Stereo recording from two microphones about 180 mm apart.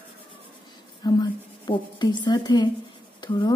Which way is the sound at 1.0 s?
25° left (ahead or behind).